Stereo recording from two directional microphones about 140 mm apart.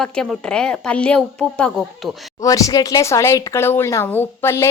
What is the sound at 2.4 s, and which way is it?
Speech, 25° left (ahead or behind).